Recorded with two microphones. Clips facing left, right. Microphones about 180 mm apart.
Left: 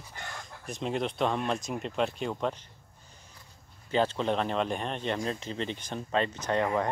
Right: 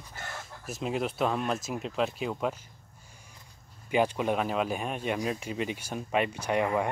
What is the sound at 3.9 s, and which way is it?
Speech, 10° right (ahead or behind).